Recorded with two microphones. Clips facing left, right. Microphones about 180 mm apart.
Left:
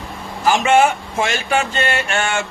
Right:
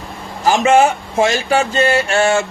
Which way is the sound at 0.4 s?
35° right (ahead or behind).